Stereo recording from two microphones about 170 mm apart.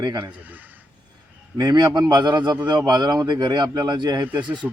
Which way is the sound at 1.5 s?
25° right (ahead or behind).